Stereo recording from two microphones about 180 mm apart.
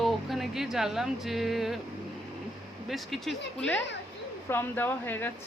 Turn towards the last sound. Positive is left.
turn(degrees=10)  # may be behind; listen again after turning